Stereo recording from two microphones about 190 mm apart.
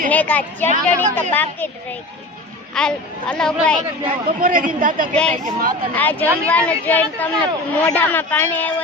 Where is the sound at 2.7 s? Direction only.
5° left (ahead or behind).